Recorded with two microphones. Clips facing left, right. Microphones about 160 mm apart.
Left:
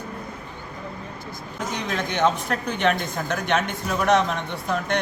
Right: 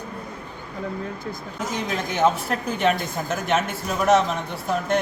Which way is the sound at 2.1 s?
5° right (ahead or behind).